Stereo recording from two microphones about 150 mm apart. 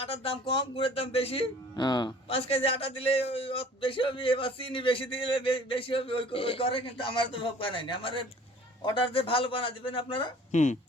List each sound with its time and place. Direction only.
0.0 s a man's voice: 40° left (ahead or behind)
1.7 s a man's voice: 30° left (ahead or behind)
10.5 s speech: 55° left (ahead or behind)